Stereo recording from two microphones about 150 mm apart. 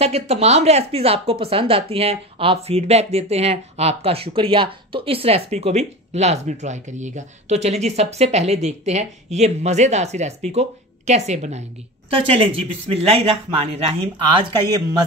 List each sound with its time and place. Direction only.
0.0 s speech: 45° right (ahead or behind)